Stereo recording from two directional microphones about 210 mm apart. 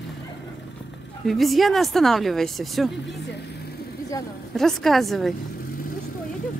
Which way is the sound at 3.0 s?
55° left (ahead or behind).